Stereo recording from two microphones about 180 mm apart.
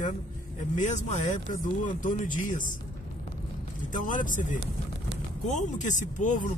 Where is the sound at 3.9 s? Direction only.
45° left (ahead or behind).